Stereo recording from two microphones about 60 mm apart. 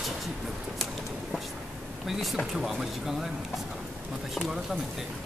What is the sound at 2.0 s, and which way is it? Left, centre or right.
Speech, centre.